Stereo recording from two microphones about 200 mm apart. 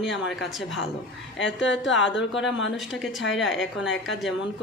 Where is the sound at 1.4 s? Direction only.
65° left (ahead or behind).